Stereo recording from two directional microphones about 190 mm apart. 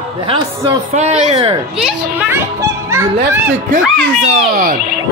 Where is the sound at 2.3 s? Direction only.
15° right (ahead or behind).